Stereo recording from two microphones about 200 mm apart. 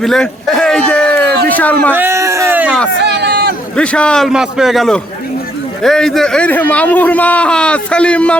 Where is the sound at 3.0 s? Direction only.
55° right (ahead or behind).